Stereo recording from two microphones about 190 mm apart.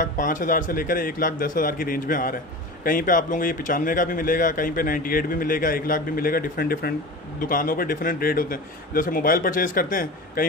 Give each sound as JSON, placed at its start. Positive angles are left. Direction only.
{"t": 0.0, "sound": "speech", "side_deg": 45}